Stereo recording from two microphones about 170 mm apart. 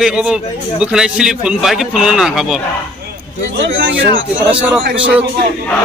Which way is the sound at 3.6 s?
60° right (ahead or behind).